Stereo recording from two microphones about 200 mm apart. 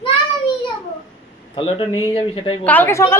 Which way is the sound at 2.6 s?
10° left (ahead or behind).